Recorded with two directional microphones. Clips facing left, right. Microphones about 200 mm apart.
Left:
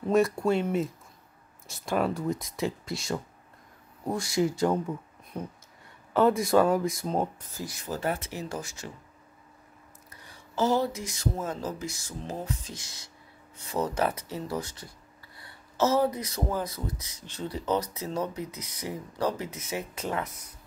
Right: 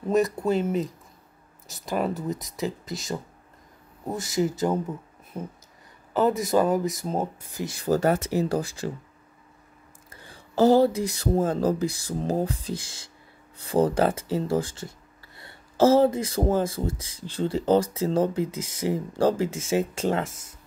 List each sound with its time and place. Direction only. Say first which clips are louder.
0.1 s speech: right 1 dB; centre (ahead or behind)
7.5 s speech: right 10 dB; 25° right (ahead or behind)
10.1 s speech: right 7 dB; 30° right (ahead or behind)